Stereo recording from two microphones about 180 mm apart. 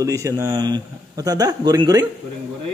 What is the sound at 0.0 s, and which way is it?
A man's voice, 15° right (ahead or behind).